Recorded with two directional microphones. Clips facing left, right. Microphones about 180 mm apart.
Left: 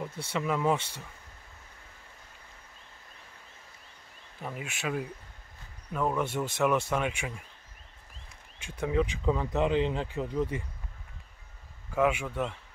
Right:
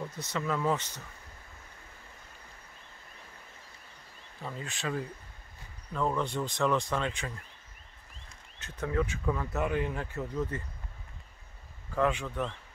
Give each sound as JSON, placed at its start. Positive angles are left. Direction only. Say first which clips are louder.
{"t": 0.3, "sound": "speech", "louder": "left 2 dB", "side_deg": 15}
{"t": 4.4, "sound": "speech", "louder": "left 1 dB", "side_deg": 15}
{"t": 8.5, "sound": "speech", "louder": "left 3 dB", "side_deg": 10}
{"t": 11.9, "sound": "speech", "louder": "left 2 dB", "side_deg": 10}